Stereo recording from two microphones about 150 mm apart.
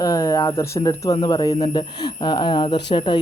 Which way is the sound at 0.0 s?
20° left (ahead or behind).